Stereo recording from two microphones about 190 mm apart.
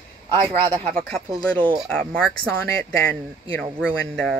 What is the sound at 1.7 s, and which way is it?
Speech, 5° left (ahead or behind).